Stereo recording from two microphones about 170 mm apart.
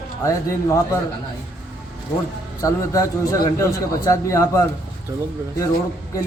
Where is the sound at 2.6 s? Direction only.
20° left (ahead or behind).